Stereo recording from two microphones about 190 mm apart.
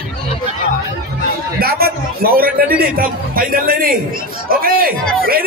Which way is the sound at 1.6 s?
55° right (ahead or behind).